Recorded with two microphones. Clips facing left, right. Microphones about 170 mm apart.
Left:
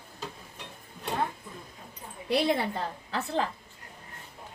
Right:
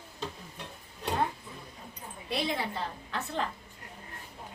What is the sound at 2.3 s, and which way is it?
Speech, 60° left (ahead or behind).